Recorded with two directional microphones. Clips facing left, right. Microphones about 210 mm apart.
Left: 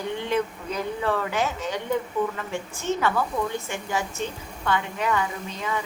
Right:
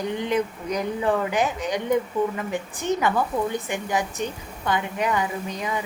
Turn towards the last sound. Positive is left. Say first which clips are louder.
# right 2 dB
turn(degrees=-15)  # may be behind; listen again after turning